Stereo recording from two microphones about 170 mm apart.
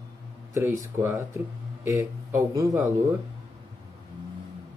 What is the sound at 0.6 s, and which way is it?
Speech, 15° right (ahead or behind).